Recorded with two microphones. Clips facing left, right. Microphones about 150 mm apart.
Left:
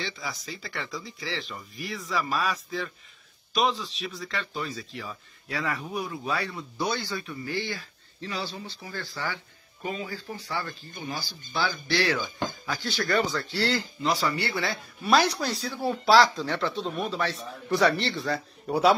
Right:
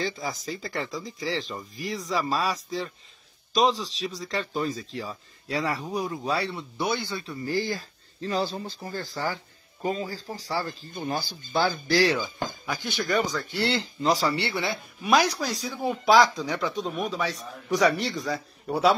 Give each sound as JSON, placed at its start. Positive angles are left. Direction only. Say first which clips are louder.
{"t": 0.0, "sound": "speech", "louder": "right 5 dB", "side_deg": -45}
{"t": 7.2, "sound": "speech", "louder": "right 4 dB", "side_deg": -40}
{"t": 11.0, "sound": "speech", "louder": "right 6 dB", "side_deg": -50}
{"t": 11.7, "sound": "speech", "louder": "right 4 dB", "side_deg": -35}
{"t": 12.4, "sound": "speech", "louder": "even", "side_deg": -15}
{"t": 14.0, "sound": "speech", "louder": "right 3 dB", "side_deg": -35}
{"t": 15.1, "sound": "speech", "louder": "even", "side_deg": -10}
{"t": 18.7, "sound": "speech", "louder": "even", "side_deg": 0}